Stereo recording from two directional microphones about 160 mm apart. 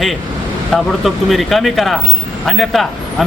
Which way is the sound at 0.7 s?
Centre (ahead or behind).